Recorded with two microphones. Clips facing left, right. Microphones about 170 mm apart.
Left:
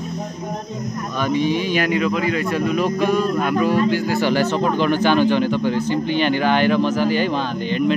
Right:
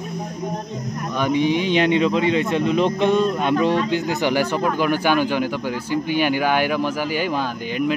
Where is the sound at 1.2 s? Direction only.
15° right (ahead or behind).